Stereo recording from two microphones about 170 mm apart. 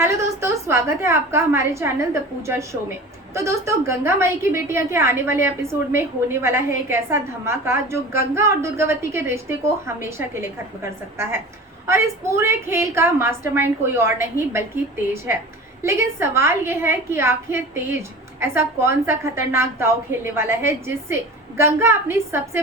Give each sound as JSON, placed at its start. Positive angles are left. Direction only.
{"t": 0.0, "sound": "a woman's voice", "side_deg": -15}